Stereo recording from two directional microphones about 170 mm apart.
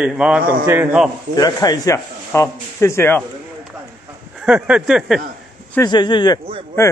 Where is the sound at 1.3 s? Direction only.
20° left (ahead or behind).